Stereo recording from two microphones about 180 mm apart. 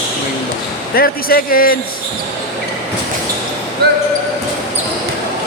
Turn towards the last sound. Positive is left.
turn(degrees=-60)  # may be behind; listen again after turning